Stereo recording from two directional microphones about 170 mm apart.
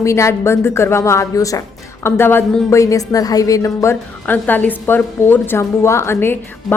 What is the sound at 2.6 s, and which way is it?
A woman's voice, 20° left (ahead or behind).